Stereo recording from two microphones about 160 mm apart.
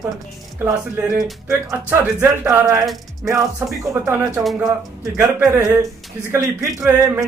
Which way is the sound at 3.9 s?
15° right (ahead or behind).